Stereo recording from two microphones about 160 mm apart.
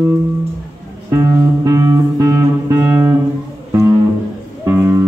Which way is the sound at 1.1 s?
20° right (ahead or behind).